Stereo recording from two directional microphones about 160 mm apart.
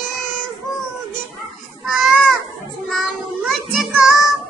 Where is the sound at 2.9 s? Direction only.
Centre (ahead or behind).